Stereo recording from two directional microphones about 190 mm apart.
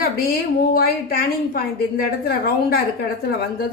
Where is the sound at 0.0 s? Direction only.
50° left (ahead or behind).